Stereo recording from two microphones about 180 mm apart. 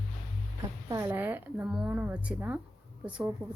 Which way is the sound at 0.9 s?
15° right (ahead or behind).